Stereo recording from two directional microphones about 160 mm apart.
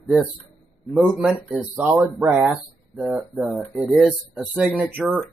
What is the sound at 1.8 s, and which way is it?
Speech, 10° right (ahead or behind).